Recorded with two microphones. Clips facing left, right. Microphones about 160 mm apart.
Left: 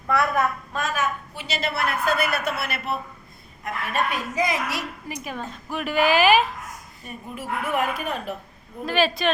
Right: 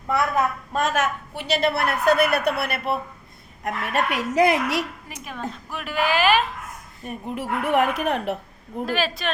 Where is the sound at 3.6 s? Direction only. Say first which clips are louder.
Right 2 dB; 70° right (ahead or behind).